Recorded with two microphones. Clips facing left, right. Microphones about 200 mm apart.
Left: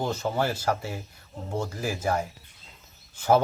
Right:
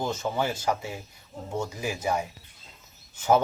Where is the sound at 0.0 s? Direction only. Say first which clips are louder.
Left 1 dB; 10° left (ahead or behind).